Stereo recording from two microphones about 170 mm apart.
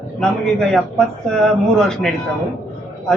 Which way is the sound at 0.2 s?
5° left (ahead or behind).